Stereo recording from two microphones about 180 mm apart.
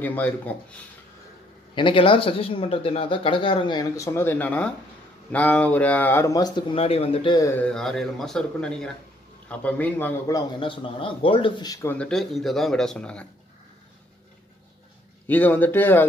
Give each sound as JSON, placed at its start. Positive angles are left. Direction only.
{"t": 0.0, "sound": "a man's voice", "side_deg": 10}
{"t": 1.8, "sound": "speech", "side_deg": 30}
{"t": 7.4, "sound": "a man's voice", "side_deg": 10}
{"t": 15.2, "sound": "a man's voice", "side_deg": 10}